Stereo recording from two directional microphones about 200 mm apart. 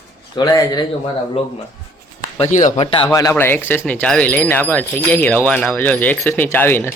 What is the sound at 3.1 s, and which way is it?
Speech, 15° left (ahead or behind).